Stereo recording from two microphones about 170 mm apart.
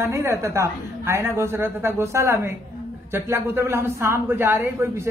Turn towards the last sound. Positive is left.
turn(degrees=-15)  # may be behind; listen again after turning